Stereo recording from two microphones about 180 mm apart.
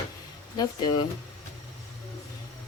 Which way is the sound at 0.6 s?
25° left (ahead or behind).